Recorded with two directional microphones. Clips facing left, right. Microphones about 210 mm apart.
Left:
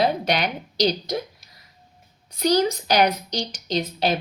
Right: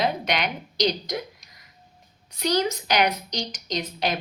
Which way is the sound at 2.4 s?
35° left (ahead or behind).